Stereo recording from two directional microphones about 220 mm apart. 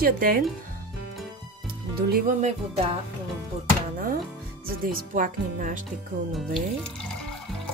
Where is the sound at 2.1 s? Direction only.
35° right (ahead or behind).